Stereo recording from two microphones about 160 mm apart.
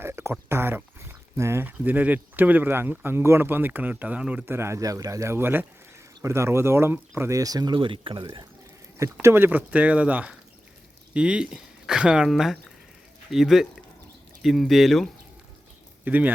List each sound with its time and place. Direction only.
0.0 s speech: 15° right (ahead or behind)
9.2 s speech: 15° right (ahead or behind)
16.0 s speech: 10° right (ahead or behind)